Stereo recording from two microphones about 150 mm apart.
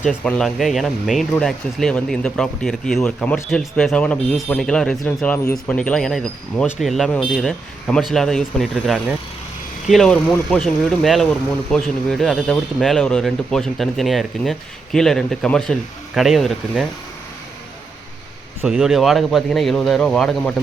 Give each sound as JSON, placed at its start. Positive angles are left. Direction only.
{"t": 0.3, "sound": "speech", "side_deg": 5}
{"t": 18.6, "sound": "speech", "side_deg": -5}